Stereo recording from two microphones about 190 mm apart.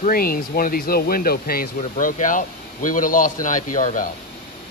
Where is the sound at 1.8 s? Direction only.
40° left (ahead or behind).